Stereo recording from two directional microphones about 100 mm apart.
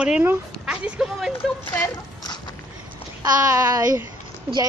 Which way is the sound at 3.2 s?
35° right (ahead or behind).